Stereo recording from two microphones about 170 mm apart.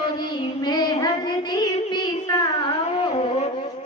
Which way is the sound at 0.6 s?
25° left (ahead or behind).